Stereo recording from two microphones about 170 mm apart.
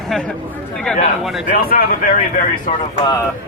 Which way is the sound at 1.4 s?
60° left (ahead or behind).